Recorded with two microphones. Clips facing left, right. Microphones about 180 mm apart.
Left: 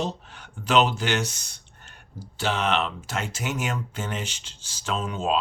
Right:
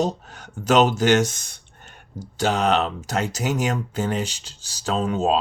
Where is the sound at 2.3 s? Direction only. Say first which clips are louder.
Right 5 dB; 40° right (ahead or behind).